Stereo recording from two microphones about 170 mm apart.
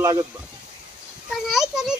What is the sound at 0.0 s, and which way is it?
Speech, 25° right (ahead or behind).